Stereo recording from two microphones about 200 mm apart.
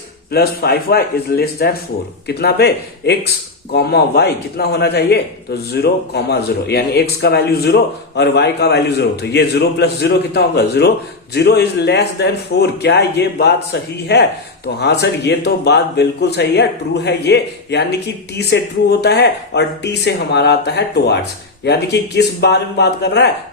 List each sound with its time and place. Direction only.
0.3 s a man's voice: 50° left (ahead or behind)